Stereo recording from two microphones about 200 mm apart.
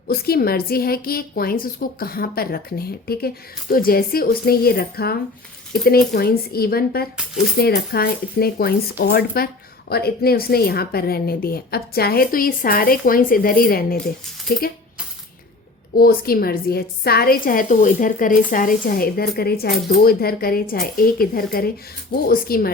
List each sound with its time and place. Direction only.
0.1 s a woman's voice: 50° left (ahead or behind)
16.0 s a woman's voice: 50° left (ahead or behind)